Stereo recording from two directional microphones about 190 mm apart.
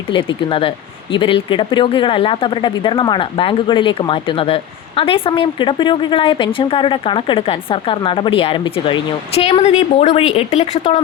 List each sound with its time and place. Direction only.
0.1 s speech: 25° left (ahead or behind)